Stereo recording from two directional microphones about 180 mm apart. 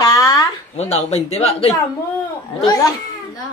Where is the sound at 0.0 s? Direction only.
20° left (ahead or behind).